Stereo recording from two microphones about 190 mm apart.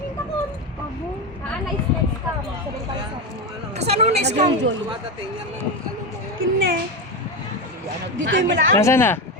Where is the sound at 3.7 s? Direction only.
35° right (ahead or behind).